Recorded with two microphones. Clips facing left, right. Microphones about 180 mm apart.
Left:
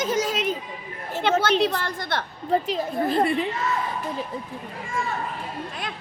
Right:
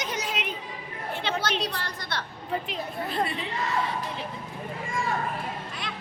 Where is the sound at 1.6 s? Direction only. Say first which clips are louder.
Left 9 dB; 50° left (ahead or behind).